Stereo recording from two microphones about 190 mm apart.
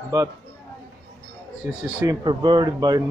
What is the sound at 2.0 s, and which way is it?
Speech, 20° right (ahead or behind).